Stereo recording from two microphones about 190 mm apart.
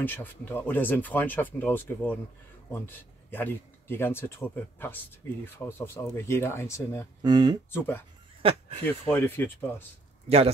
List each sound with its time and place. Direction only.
0.0 s speech: 10° left (ahead or behind)
7.2 s speech: 20° right (ahead or behind)
7.7 s speech: 10° left (ahead or behind)
8.4 s speech: 30° right (ahead or behind)
9.1 s speech: 10° left (ahead or behind)